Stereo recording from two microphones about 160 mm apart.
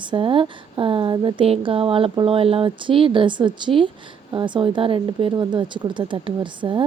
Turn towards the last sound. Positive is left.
turn(degrees=-30)  # may be behind; listen again after turning